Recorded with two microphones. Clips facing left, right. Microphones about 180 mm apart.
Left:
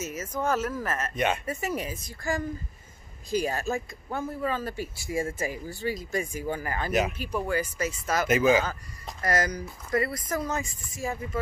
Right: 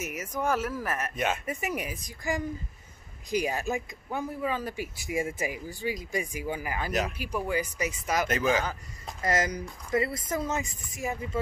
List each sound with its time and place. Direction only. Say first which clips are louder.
0.0 s speech: left 1 dB; 15° right (ahead or behind)
1.1 s speech: left 4 dB; centre (ahead or behind)
1.4 s speech: left 2 dB; 15° right (ahead or behind)
6.9 s speech: left 5 dB; 5° left (ahead or behind)
7.2 s speech: left 1 dB; 10° right (ahead or behind)
8.3 s speech: left 7 dB; 10° left (ahead or behind)
9.2 s speech: left 1 dB; 20° right (ahead or behind)